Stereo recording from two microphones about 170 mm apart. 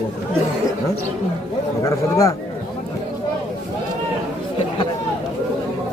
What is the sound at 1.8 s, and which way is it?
Speech, 20° left (ahead or behind).